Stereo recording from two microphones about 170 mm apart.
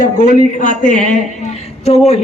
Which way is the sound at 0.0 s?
50° left (ahead or behind).